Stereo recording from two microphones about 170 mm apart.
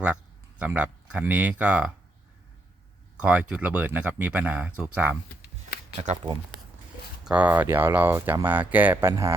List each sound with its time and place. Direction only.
0.6 s speech: 10° right (ahead or behind)
3.2 s speech: 10° right (ahead or behind)
6.0 s speech: 40° right (ahead or behind)
7.3 s speech: 10° right (ahead or behind)